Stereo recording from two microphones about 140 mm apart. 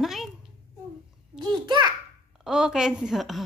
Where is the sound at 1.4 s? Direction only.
30° right (ahead or behind).